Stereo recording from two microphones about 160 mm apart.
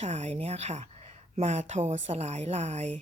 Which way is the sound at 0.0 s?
45° right (ahead or behind).